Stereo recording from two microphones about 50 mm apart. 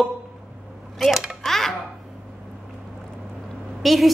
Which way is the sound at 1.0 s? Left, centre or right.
Centre.